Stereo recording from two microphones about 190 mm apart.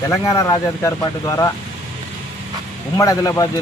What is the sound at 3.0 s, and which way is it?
Speech, 15° left (ahead or behind).